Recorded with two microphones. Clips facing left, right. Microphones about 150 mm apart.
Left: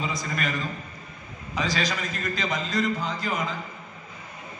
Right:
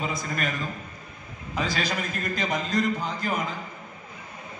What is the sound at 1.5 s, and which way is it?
A man's voice, 50° right (ahead or behind).